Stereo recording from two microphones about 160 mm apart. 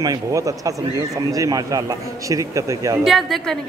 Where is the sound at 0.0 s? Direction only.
20° right (ahead or behind).